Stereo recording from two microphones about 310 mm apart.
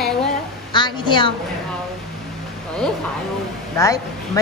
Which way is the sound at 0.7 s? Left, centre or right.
Centre.